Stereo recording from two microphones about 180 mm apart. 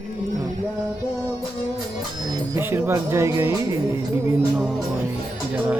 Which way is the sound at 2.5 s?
15° right (ahead or behind).